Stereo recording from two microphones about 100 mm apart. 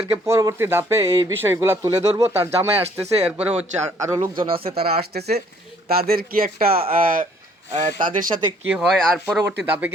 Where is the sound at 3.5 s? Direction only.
90° right.